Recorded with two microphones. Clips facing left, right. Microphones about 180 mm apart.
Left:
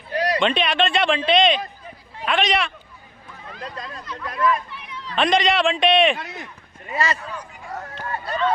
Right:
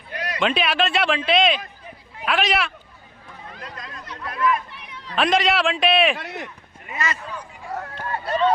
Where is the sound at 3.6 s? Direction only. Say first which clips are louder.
Left 6 dB; 30° left (ahead or behind).